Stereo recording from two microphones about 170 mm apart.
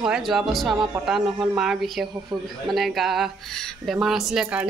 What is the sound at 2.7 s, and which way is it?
Speech, centre (ahead or behind).